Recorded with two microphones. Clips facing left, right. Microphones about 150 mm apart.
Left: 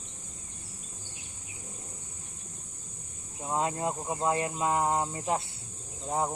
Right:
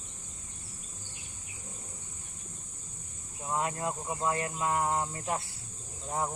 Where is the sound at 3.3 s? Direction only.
25° left (ahead or behind).